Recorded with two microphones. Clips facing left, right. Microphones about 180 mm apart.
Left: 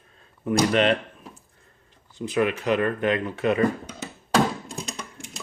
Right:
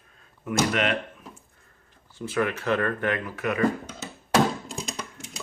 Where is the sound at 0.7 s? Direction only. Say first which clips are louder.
Left 5 dB; 30° left (ahead or behind).